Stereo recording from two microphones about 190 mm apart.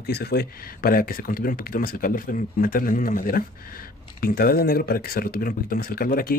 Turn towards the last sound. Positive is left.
turn(degrees=50)  # may be behind; listen again after turning